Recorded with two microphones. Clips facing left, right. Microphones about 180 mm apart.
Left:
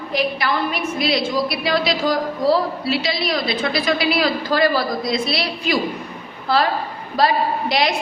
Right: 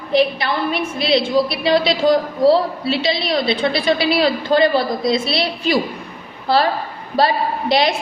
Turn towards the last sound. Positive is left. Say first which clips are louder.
# right 3 dB
turn(degrees=-25)  # may be behind; listen again after turning